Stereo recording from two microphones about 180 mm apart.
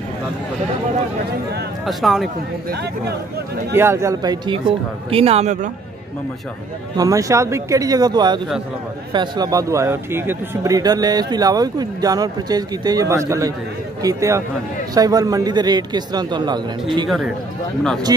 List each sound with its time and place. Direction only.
1.9 s speech: centre (ahead or behind)
2.7 s speech: 60° right (ahead or behind)
3.7 s a man's voice: 15° right (ahead or behind); by 5.7 s 40° right (ahead or behind)
7.0 s a man's voice: 20° right (ahead or behind)